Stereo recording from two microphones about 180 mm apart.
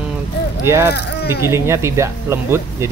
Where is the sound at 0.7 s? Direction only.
15° right (ahead or behind).